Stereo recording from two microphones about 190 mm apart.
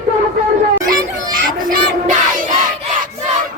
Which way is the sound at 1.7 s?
45° right (ahead or behind).